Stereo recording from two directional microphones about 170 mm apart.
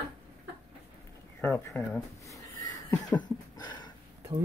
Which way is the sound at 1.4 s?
5° left (ahead or behind).